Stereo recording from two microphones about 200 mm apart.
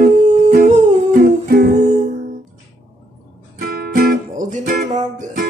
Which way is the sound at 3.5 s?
50° right (ahead or behind).